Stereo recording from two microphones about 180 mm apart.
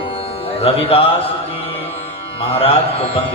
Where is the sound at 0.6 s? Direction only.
35° left (ahead or behind).